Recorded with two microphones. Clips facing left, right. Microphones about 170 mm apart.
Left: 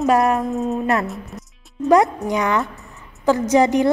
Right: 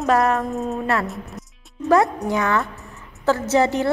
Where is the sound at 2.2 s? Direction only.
15° left (ahead or behind).